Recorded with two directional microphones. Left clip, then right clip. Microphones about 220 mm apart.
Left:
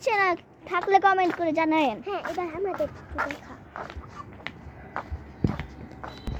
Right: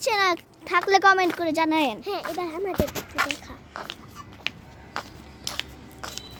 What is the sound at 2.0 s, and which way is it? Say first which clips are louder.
Speech: right 1 dB; 35° right (ahead or behind).